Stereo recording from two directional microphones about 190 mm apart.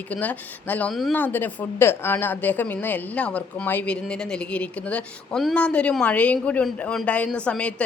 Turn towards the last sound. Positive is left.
turn(degrees=5)  # may be behind; listen again after turning